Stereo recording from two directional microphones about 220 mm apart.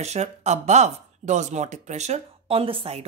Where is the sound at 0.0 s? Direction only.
30° right (ahead or behind).